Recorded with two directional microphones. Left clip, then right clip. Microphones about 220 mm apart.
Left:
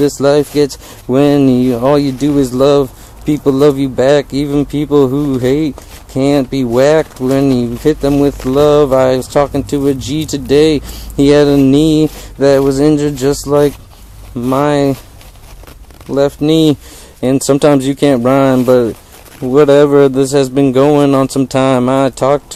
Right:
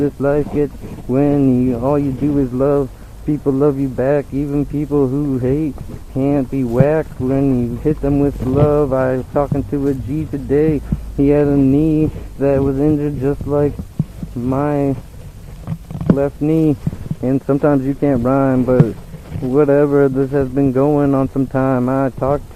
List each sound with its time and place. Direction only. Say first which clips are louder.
0.0 s speech: left 6 dB; 35° left (ahead or behind)
16.4 s speech: left 5 dB; 40° left (ahead or behind)